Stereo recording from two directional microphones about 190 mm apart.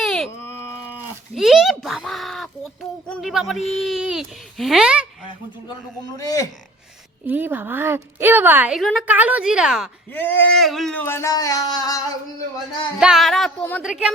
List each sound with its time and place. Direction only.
0.0 s baby cry: centre (ahead or behind)
0.3 s baby cry: 15° left (ahead or behind)
1.4 s speech: centre (ahead or behind)
6.1 s a man's voice: 20° left (ahead or behind)
7.3 s a woman's voice: 10° right (ahead or behind)
10.1 s speech: 10° left (ahead or behind)
13.0 s speech: centre (ahead or behind)
13.8 s speech: 5° right (ahead or behind)